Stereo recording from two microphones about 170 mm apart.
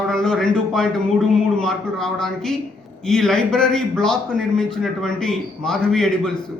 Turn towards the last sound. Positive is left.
turn(degrees=5)  # may be behind; listen again after turning